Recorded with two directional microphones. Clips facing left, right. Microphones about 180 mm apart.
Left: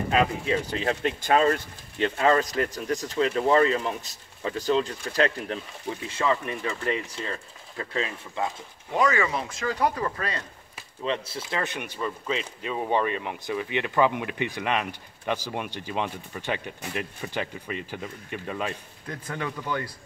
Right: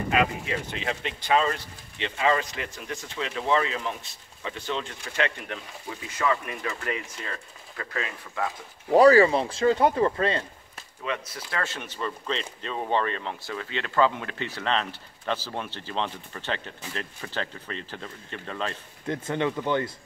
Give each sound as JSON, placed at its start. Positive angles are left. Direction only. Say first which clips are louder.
{"t": 0.1, "sound": "speech", "louder": "left 2 dB", "side_deg": 35}
{"t": 8.9, "sound": "speech", "louder": "right 8 dB", "side_deg": -35}
{"t": 11.1, "sound": "speech", "louder": "left 3 dB", "side_deg": 30}
{"t": 19.0, "sound": "speech", "louder": "right 6 dB", "side_deg": -25}